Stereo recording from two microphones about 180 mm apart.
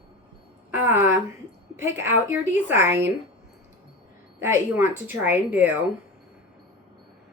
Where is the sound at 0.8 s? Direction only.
10° right (ahead or behind).